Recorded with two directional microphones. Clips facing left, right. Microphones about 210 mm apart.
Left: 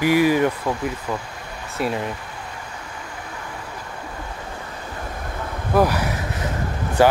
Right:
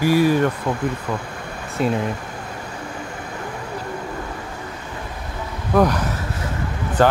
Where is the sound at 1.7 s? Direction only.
Centre (ahead or behind).